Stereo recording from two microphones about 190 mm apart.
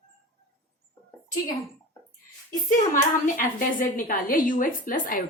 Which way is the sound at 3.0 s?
45° left (ahead or behind).